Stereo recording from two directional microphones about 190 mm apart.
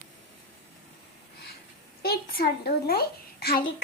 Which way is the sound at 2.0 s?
55° left (ahead or behind).